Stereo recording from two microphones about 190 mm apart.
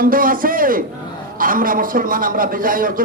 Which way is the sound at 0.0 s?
45° right (ahead or behind).